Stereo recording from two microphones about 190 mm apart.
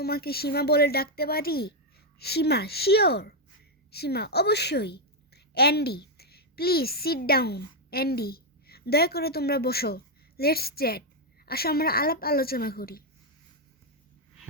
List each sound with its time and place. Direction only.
0.0 s a woman's voice: 55° left (ahead or behind)